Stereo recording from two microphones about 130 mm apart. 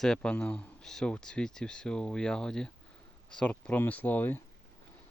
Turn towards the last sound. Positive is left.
turn(degrees=15)  # may be behind; listen again after turning